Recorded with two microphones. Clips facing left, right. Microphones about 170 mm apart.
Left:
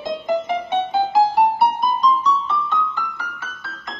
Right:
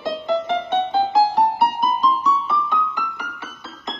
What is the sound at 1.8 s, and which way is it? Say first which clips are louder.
Keyboard: left 1 dB; 5° right (ahead or behind).